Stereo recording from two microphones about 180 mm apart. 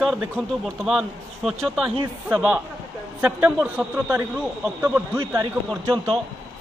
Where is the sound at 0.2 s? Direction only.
5° right (ahead or behind).